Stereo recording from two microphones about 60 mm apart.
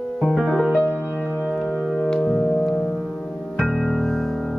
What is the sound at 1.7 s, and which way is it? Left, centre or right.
Organ, centre.